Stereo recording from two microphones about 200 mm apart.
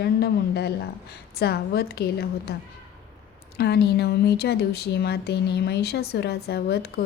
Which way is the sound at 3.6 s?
55° left (ahead or behind).